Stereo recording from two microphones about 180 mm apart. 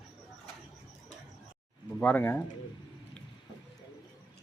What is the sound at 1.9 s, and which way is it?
Speech, 10° left (ahead or behind).